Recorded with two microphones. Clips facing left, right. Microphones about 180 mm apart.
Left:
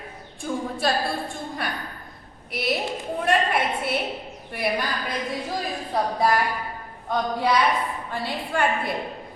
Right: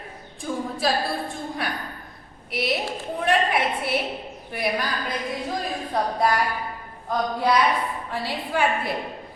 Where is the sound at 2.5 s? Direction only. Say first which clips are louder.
Even; centre (ahead or behind).